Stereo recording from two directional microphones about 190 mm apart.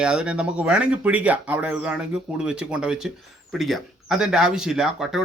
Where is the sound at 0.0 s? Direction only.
5° right (ahead or behind).